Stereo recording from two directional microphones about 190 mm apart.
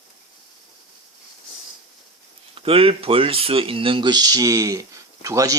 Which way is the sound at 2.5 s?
30° right (ahead or behind).